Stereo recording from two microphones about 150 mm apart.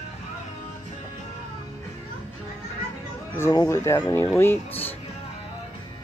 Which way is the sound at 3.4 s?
20° left (ahead or behind).